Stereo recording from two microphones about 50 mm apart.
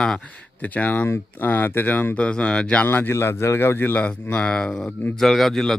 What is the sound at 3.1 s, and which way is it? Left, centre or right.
Speech, left.